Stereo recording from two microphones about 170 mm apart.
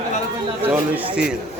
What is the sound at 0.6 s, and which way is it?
Speech, 5° right (ahead or behind).